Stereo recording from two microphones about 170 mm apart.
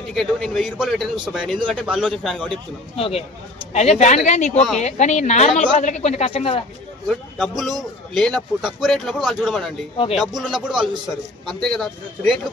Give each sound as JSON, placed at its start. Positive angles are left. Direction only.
{"t": 0.1, "sound": "a man's voice", "side_deg": 0}
{"t": 3.0, "sound": "a woman's voice", "side_deg": 35}
{"t": 7.1, "sound": "a man's voice", "side_deg": 0}